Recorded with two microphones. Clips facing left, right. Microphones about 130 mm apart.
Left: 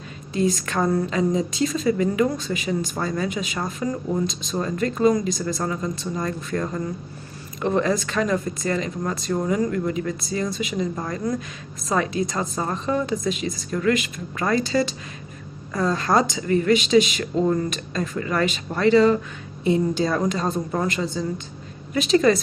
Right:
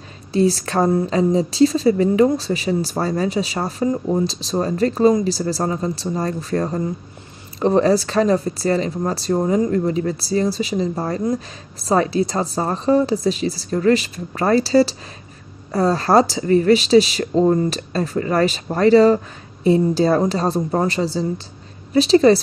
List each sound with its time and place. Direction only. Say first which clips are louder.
0.3 s speech: right 5 dB; 35° right (ahead or behind)